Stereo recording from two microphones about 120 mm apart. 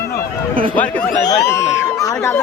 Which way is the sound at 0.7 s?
10° left (ahead or behind).